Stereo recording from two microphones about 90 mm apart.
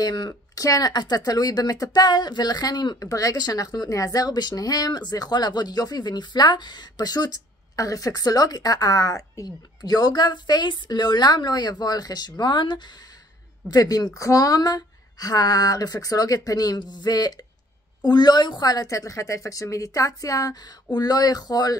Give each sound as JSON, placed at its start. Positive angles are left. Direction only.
{"t": 0.0, "sound": "speech", "side_deg": 55}
{"t": 0.3, "sound": "speech", "side_deg": 40}
{"t": 13.7, "sound": "speech", "side_deg": 45}